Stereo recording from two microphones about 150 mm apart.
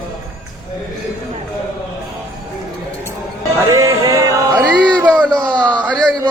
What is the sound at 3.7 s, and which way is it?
Music, 20° right (ahead or behind).